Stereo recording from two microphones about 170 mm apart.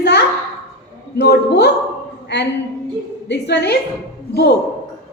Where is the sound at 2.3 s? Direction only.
85° left.